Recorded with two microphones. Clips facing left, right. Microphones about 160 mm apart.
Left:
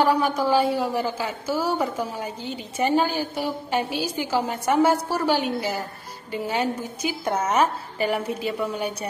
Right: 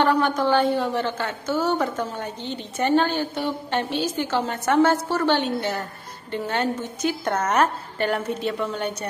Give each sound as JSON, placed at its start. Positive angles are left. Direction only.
{"t": 0.0, "sound": "a woman's voice", "side_deg": 5}